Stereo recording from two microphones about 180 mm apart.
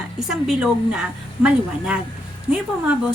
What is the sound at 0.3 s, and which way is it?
A woman's voice, 5° right (ahead or behind).